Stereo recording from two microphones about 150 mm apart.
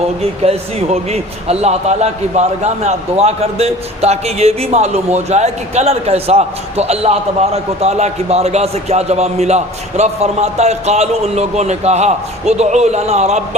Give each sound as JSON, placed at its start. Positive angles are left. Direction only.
{"t": 0.2, "sound": "a man's voice", "side_deg": -45}